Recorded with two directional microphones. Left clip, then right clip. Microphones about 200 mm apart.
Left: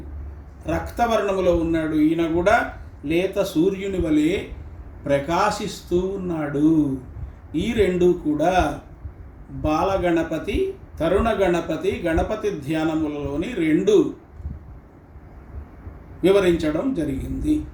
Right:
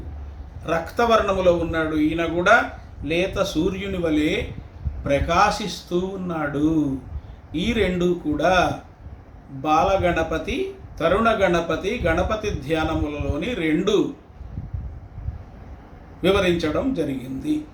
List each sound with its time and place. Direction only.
0.6 s speech: 15° right (ahead or behind)
9.6 s speech: 15° right (ahead or behind)
16.2 s speech: 15° right (ahead or behind)